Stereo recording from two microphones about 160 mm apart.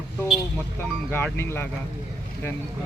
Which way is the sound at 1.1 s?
15° left (ahead or behind).